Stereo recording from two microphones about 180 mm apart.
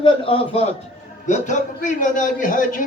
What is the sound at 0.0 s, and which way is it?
Speech, 30° left (ahead or behind).